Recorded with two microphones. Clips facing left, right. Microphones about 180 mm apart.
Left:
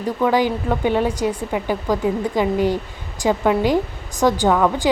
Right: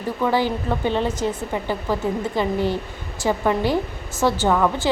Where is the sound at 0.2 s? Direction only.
15° left (ahead or behind).